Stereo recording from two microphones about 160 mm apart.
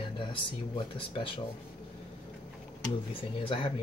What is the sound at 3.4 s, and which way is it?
Speech, 30° left (ahead or behind).